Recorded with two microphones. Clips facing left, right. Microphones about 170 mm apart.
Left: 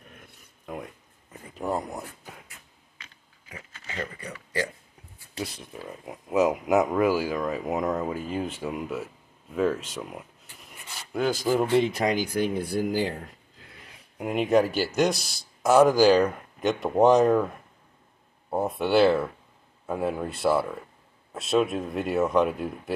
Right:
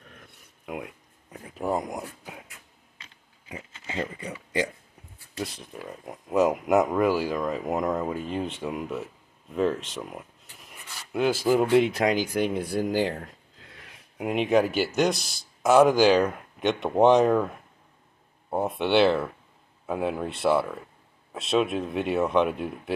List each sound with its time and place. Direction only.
0.7 s speech: 5° right (ahead or behind)
3.0 s a sound: 25° right (ahead or behind)
5.4 s speech: centre (ahead or behind)
14.1 s speech: centre (ahead or behind)
18.5 s speech: centre (ahead or behind)